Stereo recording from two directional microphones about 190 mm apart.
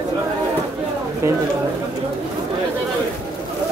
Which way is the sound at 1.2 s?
15° right (ahead or behind).